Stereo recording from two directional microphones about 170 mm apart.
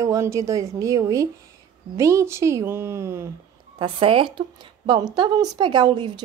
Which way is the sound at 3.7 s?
30° right (ahead or behind).